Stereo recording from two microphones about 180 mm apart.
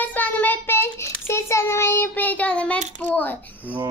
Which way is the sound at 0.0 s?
10° left (ahead or behind).